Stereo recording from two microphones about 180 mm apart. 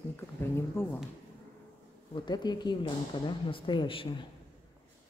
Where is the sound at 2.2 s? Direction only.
25° left (ahead or behind).